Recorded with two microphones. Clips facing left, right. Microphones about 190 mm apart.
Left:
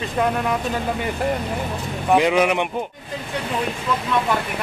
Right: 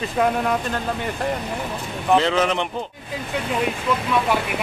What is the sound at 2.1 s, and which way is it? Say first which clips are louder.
Speech: left 2 dB; 15° left (ahead or behind).